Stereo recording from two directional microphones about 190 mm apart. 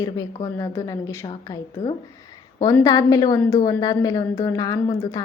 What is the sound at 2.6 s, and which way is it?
A woman's voice, 15° left (ahead or behind).